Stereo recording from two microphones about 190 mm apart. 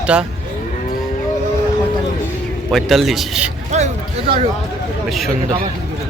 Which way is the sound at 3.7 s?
35° right (ahead or behind).